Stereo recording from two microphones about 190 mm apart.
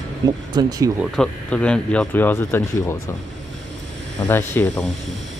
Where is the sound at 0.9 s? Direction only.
5° left (ahead or behind).